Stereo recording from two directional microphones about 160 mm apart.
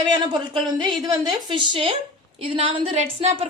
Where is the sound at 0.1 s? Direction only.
30° right (ahead or behind).